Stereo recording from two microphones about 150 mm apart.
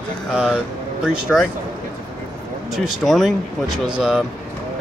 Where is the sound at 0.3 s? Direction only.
5° right (ahead or behind).